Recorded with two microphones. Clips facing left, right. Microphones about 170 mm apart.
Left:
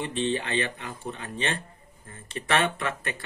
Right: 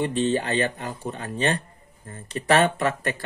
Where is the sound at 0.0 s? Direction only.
40° right (ahead or behind).